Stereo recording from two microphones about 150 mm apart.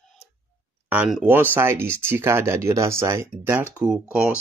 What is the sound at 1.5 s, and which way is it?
Speech, 15° right (ahead or behind).